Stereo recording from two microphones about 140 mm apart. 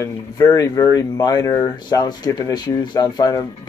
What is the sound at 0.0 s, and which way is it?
Speech, 25° left (ahead or behind).